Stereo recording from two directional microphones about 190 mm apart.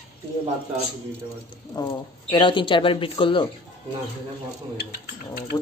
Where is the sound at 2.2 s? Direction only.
30° left (ahead or behind).